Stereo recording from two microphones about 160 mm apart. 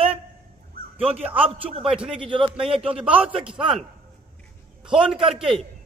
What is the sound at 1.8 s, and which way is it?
A man's voice, 5° right (ahead or behind).